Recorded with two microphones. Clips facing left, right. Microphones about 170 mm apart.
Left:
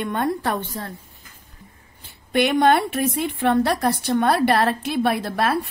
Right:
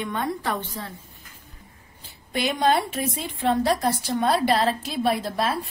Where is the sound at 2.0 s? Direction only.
65° left (ahead or behind).